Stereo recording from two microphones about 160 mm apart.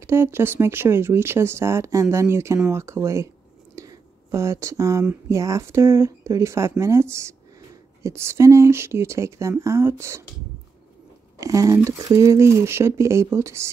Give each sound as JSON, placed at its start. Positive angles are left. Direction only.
{"t": 0.0, "sound": "speech", "side_deg": -15}
{"t": 3.7, "sound": "a sound", "side_deg": -20}
{"t": 5.3, "sound": "speech", "side_deg": -20}
{"t": 11.3, "sound": "speech", "side_deg": -20}